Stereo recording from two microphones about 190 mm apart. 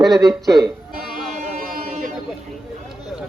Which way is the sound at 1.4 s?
45° right (ahead or behind).